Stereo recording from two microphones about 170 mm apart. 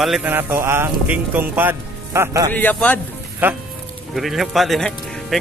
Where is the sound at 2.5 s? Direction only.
10° left (ahead or behind).